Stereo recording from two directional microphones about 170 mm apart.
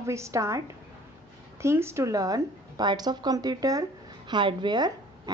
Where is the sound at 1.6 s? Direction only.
15° right (ahead or behind).